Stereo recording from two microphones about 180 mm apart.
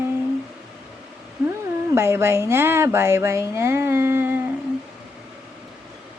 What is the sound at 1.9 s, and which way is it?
Speech, 15° right (ahead or behind).